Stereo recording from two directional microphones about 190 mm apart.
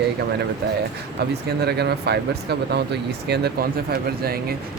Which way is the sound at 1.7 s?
60° right (ahead or behind).